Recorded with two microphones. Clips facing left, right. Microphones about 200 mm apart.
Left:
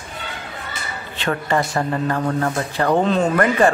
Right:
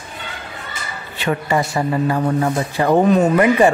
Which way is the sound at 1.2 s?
10° right (ahead or behind).